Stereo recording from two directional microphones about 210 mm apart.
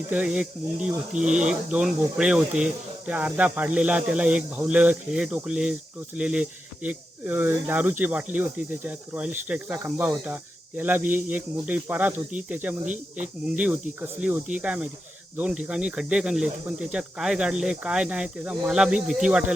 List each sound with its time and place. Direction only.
0.1 s speech: 5° right (ahead or behind)
12.8 s speech: 35° right (ahead or behind)
13.2 s speech: 5° right (ahead or behind)